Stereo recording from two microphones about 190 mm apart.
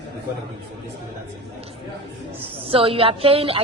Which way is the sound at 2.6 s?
30° right (ahead or behind).